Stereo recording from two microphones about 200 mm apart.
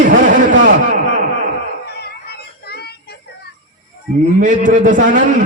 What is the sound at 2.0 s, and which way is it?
Synthetic singing, 50° left (ahead or behind).